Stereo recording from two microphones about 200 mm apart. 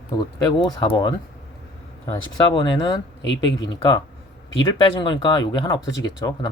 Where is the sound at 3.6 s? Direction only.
20° left (ahead or behind).